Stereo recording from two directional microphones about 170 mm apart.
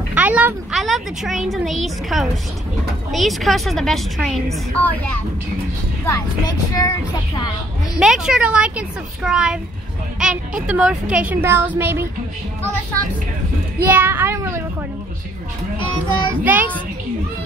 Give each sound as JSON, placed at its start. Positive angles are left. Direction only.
{"t": 0.1, "sound": "a woman's voice", "side_deg": -10}
{"t": 6.0, "sound": "speech", "side_deg": 20}
{"t": 8.0, "sound": "a woman's voice", "side_deg": -5}
{"t": 13.8, "sound": "a child's voice", "side_deg": -10}
{"t": 16.4, "sound": "a child's voice", "side_deg": -10}